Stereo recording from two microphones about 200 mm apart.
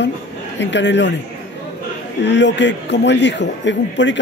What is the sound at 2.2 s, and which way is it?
A man's voice, 60° left (ahead or behind).